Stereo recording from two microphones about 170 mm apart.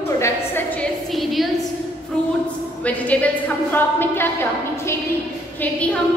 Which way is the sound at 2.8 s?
10° left (ahead or behind).